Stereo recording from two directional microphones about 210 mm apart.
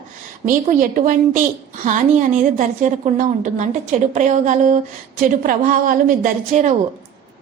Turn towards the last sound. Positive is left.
turn(degrees=-35)  # may be behind; listen again after turning